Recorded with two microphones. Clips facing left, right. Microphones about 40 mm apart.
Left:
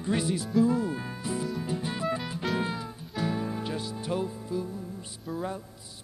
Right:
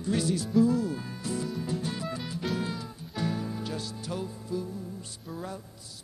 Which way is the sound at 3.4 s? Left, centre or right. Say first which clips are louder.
Left 2 dB; left.